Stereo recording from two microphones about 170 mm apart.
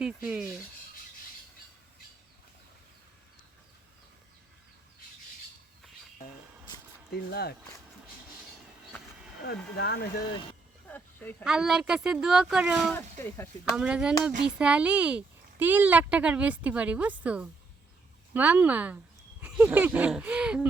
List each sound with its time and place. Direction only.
0.0 s a woman's voice: 5° right (ahead or behind)
7.1 s speech: 70° left (ahead or behind)
9.4 s speech: 70° left (ahead or behind)
10.8 s a sound: 10° left (ahead or behind)
11.4 s a woman's voice: 5° right (ahead or behind)
12.9 s speech: 15° left (ahead or behind)
13.7 s a woman's voice: 5° right (ahead or behind)